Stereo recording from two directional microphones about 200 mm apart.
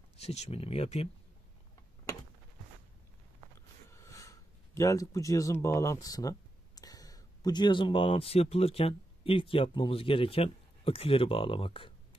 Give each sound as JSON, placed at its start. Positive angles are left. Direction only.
{"t": 0.2, "sound": "speech", "side_deg": 30}
{"t": 3.5, "sound": "speech", "side_deg": 15}